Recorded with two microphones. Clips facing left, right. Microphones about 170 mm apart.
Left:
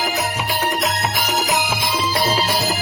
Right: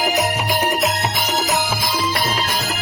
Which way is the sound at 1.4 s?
20° left (ahead or behind).